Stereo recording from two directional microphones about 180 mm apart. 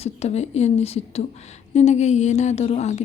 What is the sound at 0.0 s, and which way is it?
Speech, 35° left (ahead or behind).